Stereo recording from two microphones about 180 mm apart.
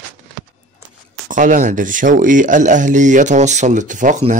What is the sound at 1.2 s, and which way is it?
Speech, 45° right (ahead or behind).